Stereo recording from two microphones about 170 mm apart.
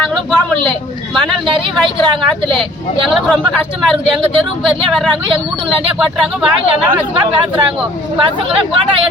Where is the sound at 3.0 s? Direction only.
Centre (ahead or behind).